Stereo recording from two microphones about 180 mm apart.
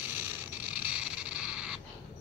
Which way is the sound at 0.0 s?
10° right (ahead or behind).